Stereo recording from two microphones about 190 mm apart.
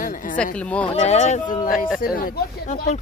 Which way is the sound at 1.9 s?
50° left (ahead or behind).